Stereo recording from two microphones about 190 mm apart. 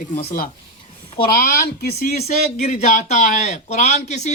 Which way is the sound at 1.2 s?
50° left (ahead or behind).